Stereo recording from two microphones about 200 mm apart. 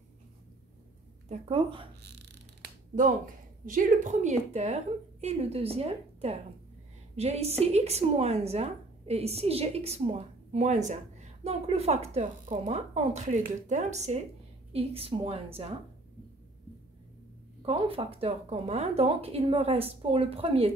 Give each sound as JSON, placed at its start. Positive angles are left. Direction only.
{"t": 1.3, "sound": "speech", "side_deg": -25}
{"t": 2.0, "sound": "a sound", "side_deg": -55}
{"t": 3.6, "sound": "a woman's voice", "side_deg": -40}
{"t": 17.6, "sound": "speech", "side_deg": -25}